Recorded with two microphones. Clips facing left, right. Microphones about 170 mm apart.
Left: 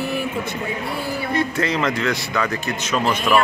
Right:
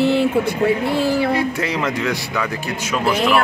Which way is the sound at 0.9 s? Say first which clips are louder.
Right 8 dB; 90° right.